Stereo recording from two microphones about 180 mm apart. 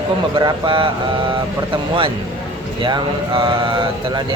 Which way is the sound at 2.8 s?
25° right (ahead or behind).